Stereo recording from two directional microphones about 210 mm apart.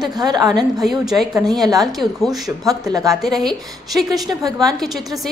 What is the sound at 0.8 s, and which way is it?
A woman's voice, centre (ahead or behind).